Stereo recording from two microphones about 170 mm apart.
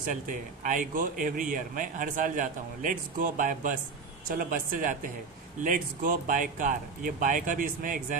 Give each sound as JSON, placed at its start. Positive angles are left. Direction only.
{"t": 0.7, "sound": "a man's voice", "side_deg": -50}